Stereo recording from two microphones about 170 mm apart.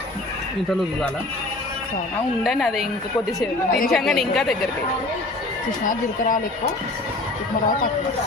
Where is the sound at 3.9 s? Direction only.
Centre (ahead or behind).